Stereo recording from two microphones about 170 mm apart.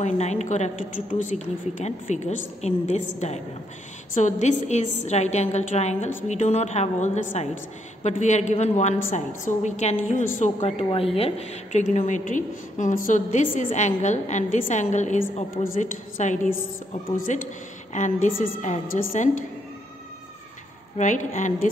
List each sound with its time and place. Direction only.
0.0 s a woman's voice: 40° left (ahead or behind)
21.0 s a woman's voice: 45° left (ahead or behind)